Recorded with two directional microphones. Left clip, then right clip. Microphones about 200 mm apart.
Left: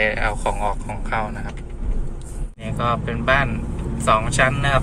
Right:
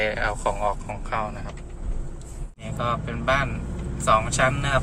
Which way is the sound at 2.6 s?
15° right (ahead or behind).